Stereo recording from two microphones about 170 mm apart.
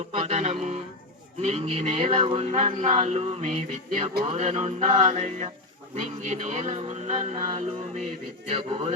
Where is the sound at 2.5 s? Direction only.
45° right (ahead or behind).